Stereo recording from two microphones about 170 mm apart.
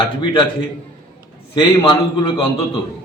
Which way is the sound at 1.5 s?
30° left (ahead or behind).